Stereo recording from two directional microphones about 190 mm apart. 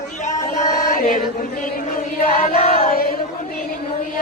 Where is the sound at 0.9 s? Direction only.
45° left (ahead or behind).